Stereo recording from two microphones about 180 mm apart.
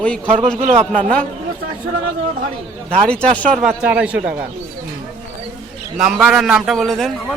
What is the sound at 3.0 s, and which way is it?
Speech, 5° left (ahead or behind).